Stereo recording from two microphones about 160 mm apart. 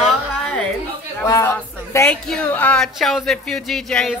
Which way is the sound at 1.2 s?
20° left (ahead or behind).